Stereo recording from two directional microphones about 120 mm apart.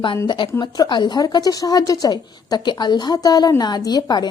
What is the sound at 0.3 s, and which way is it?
A woman's voice, 40° left (ahead or behind).